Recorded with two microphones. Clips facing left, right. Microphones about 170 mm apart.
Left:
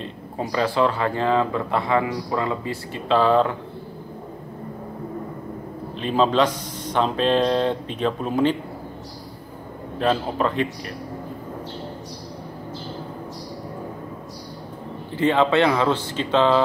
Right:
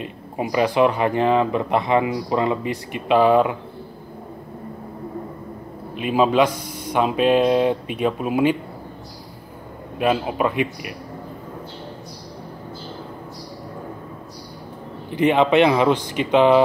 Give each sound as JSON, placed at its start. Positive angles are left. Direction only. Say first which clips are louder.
{"t": 0.0, "sound": "speech", "louder": "right 2 dB", "side_deg": -15}
{"t": 5.9, "sound": "speech", "louder": "right 2 dB", "side_deg": -10}
{"t": 9.9, "sound": "speech", "louder": "right 1 dB", "side_deg": -10}
{"t": 15.0, "sound": "speech", "louder": "right 2 dB", "side_deg": -15}